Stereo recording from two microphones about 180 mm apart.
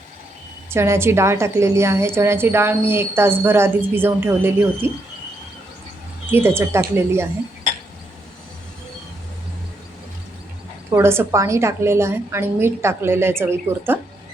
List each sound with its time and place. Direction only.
0.7 s a woman's voice: 15° right (ahead or behind)
6.3 s a woman's voice: 10° right (ahead or behind)
10.9 s a woman's voice: 10° right (ahead or behind)